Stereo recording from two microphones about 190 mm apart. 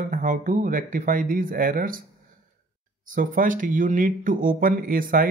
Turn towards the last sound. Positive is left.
turn(degrees=-45)  # may be behind; listen again after turning